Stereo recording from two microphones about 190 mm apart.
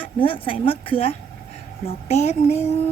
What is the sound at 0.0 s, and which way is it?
Speech, 30° left (ahead or behind).